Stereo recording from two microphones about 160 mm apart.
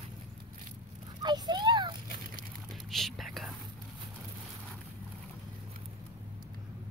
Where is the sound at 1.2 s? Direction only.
25° right (ahead or behind).